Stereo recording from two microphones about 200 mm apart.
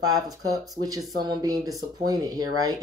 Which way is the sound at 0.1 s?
20° right (ahead or behind).